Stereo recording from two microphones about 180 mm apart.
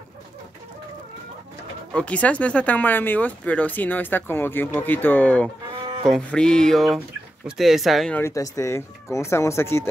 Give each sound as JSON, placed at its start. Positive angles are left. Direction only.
{"t": 1.9, "sound": "speech", "side_deg": 5}
{"t": 6.0, "sound": "music", "side_deg": 5}
{"t": 8.2, "sound": "speech", "side_deg": 15}